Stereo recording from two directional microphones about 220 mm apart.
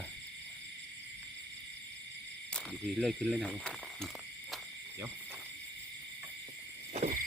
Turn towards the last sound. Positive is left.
turn(degrees=-30)  # may be behind; listen again after turning